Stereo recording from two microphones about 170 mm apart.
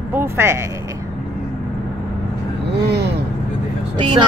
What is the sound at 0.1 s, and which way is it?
Speech, 15° right (ahead or behind).